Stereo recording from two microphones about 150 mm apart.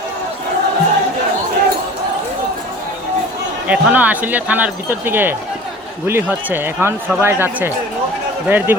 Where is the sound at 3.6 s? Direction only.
10° right (ahead or behind).